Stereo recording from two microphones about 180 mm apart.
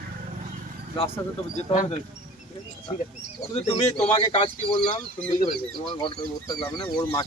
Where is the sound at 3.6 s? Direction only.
35° left (ahead or behind).